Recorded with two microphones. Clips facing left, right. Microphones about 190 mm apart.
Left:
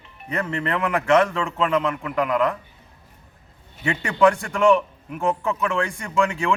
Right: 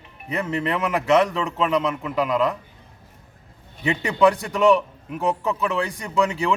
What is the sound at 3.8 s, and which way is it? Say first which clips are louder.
Speech: right 2 dB; 15° right (ahead or behind).